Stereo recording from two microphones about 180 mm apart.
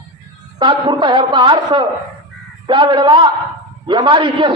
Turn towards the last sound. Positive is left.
turn(degrees=-25)  # may be behind; listen again after turning